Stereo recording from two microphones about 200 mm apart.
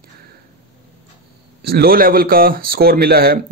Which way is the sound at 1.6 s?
50° right (ahead or behind).